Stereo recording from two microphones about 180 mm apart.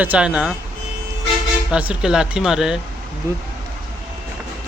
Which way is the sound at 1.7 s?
5° right (ahead or behind).